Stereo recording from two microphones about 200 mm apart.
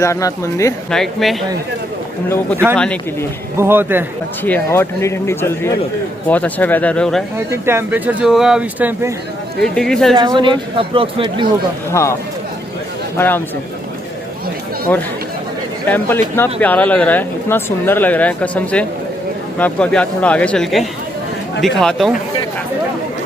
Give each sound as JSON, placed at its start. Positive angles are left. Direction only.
{"t": 0.0, "sound": "speech", "side_deg": 15}
{"t": 0.9, "sound": "speech", "side_deg": 0}
{"t": 2.7, "sound": "speech", "side_deg": 5}
{"t": 3.6, "sound": "speech", "side_deg": -10}
{"t": 4.4, "sound": "speech", "side_deg": 10}
{"t": 7.3, "sound": "speech", "side_deg": -10}
{"t": 9.6, "sound": "speech", "side_deg": 5}
{"t": 10.2, "sound": "speech", "side_deg": -25}
{"t": 11.9, "sound": "speech", "side_deg": 15}
{"t": 13.1, "sound": "speech", "side_deg": 10}
{"t": 15.9, "sound": "speech", "side_deg": 10}